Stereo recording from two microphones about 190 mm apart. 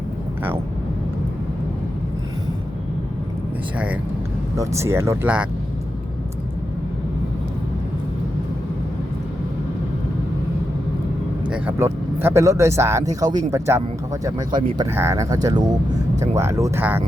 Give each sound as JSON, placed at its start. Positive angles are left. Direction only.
{"t": 4.5, "sound": "speech", "side_deg": -15}
{"t": 11.4, "sound": "speech", "side_deg": -5}